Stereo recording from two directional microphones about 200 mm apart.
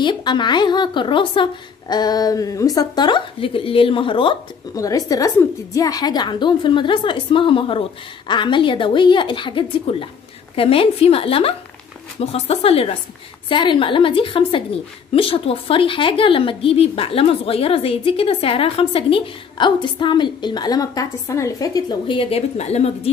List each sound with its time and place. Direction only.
0.0 s a woman's voice: 20° left (ahead or behind)